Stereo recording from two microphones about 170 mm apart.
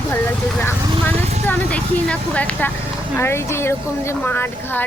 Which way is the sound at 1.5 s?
10° left (ahead or behind).